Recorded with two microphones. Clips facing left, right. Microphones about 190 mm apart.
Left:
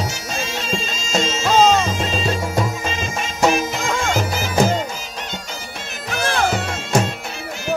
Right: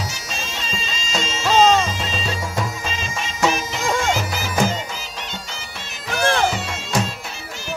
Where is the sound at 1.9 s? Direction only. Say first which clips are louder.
Left 5 dB; 50° left (ahead or behind).